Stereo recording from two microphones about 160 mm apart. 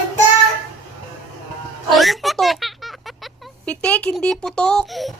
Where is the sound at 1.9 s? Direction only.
Centre (ahead or behind).